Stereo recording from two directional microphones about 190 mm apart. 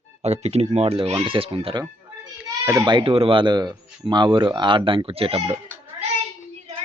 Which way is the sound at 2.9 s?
25° right (ahead or behind).